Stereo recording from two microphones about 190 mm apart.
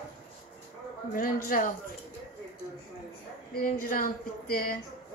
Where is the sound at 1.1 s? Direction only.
45° left (ahead or behind).